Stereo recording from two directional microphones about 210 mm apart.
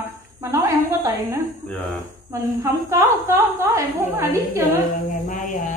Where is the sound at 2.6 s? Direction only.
10° right (ahead or behind).